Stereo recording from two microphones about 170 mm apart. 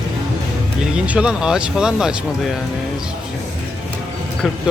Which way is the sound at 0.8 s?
5° right (ahead or behind).